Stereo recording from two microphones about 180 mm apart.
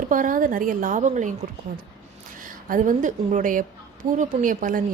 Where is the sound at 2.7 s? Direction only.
45° right (ahead or behind).